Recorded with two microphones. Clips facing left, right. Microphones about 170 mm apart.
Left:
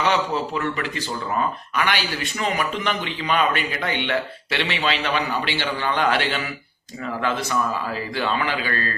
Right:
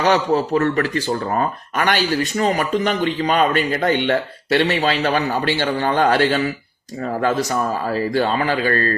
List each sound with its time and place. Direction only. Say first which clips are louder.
0.0 s speech: right 5 dB; 40° right (ahead or behind)